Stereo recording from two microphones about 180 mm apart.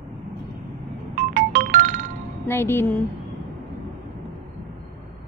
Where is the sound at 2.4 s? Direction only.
10° left (ahead or behind).